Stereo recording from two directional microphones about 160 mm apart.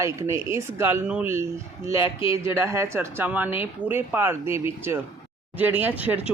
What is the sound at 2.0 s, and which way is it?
Speech, 35° left (ahead or behind).